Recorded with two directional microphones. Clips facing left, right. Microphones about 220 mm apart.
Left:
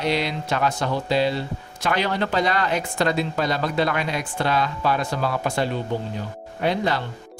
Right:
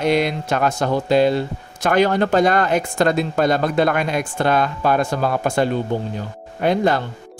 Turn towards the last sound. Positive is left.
turn(degrees=-50)  # may be behind; listen again after turning